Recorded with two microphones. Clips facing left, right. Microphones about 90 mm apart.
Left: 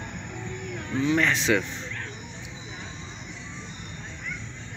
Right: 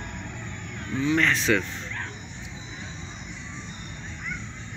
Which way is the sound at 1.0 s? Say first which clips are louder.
Right 1 dB; 20° left (ahead or behind).